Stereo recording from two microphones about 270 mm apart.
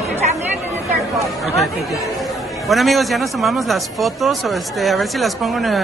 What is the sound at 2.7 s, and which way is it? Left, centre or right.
Speech, centre.